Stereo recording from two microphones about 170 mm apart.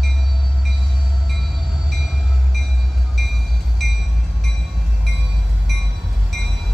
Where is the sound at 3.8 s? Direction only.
Centre (ahead or behind).